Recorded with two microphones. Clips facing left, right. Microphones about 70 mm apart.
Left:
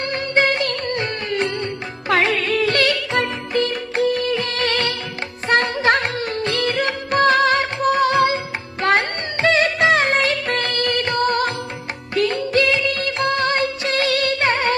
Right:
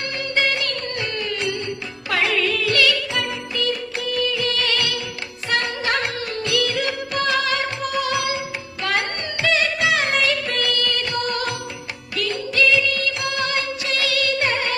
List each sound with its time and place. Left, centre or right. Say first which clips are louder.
0.1 s music: left 4 dB; left
5.5 s music of bollywood: left 6 dB; left
8.8 s music: left 5 dB; left
12.1 s music of bollywood: left 5 dB; left